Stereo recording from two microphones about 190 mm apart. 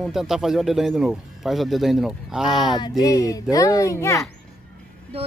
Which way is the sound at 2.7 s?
20° left (ahead or behind).